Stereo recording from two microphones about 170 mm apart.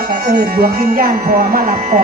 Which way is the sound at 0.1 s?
65° right (ahead or behind).